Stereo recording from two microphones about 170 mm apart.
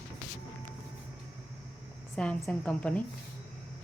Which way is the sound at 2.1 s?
5° left (ahead or behind).